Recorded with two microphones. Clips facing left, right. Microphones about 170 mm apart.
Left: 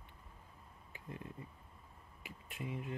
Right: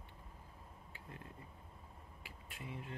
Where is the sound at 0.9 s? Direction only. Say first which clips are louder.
Left 6 dB; 20° left (ahead or behind).